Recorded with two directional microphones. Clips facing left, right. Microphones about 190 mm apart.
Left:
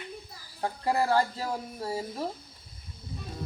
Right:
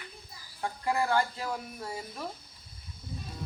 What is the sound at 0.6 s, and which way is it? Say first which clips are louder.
Speech: left 3 dB; 35° left (ahead or behind).